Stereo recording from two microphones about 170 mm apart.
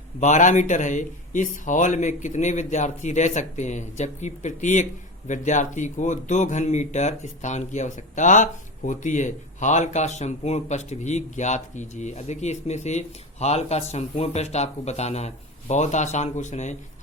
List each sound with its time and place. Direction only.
0.2 s speech: 45° left (ahead or behind)